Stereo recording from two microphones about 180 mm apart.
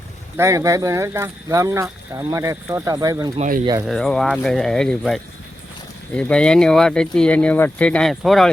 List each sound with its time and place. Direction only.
0.3 s speech: 15° right (ahead or behind)
3.3 s speech: 45° right (ahead or behind)
3.8 s speech: centre (ahead or behind)